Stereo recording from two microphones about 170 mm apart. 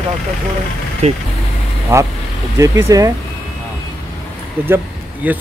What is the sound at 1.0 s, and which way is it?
Speech, 40° right (ahead or behind).